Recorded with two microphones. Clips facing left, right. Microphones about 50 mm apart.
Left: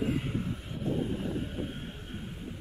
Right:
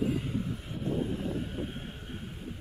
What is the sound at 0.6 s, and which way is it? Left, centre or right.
Vehicle, centre.